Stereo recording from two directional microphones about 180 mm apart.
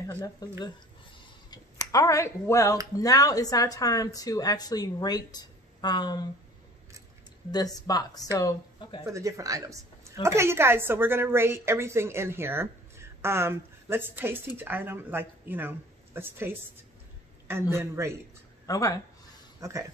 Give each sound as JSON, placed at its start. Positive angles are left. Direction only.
{"t": 0.2, "sound": "a woman's voice", "side_deg": 20}
{"t": 7.5, "sound": "a woman's voice", "side_deg": 20}
{"t": 9.1, "sound": "a woman's voice", "side_deg": -20}
{"t": 17.7, "sound": "a woman's voice", "side_deg": -15}
{"t": 18.7, "sound": "a woman's voice", "side_deg": 20}
{"t": 19.6, "sound": "a woman's voice", "side_deg": -15}